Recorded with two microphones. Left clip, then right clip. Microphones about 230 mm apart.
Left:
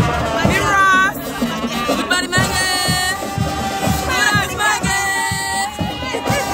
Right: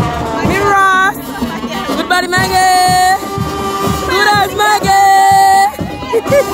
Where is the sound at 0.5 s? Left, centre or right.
Right.